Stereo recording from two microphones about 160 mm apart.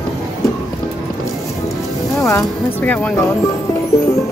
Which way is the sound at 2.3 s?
15° left (ahead or behind).